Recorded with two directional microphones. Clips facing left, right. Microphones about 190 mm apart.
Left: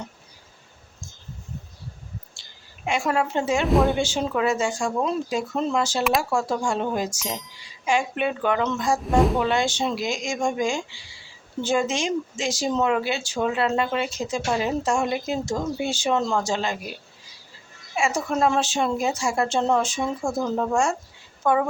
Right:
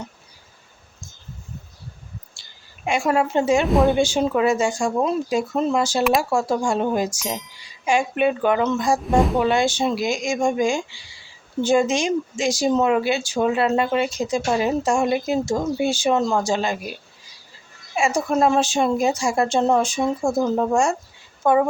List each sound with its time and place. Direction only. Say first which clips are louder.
2.4 s a sound: even; 10° right (ahead or behind)
2.8 s speech: right 3 dB; 10° right (ahead or behind)
3.7 s speech: left 1 dB; centre (ahead or behind)
4.0 s speech: right 4 dB; 10° right (ahead or behind)
6.0 s speech: right 4 dB; centre (ahead or behind)
7.2 s speech: right 3 dB; centre (ahead or behind)
7.6 s speech: right 3 dB; 15° right (ahead or behind)
9.4 s speech: right 4 dB; 10° right (ahead or behind)
18.0 s speech: right 3 dB; 15° right (ahead or behind)